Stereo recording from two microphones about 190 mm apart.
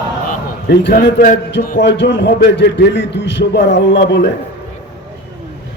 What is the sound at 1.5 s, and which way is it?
A man's voice, 70° left (ahead or behind).